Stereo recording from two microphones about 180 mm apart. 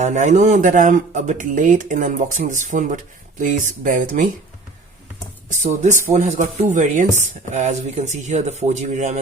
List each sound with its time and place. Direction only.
0.0 s speech: 40° right (ahead or behind)
5.6 s speech: 40° right (ahead or behind)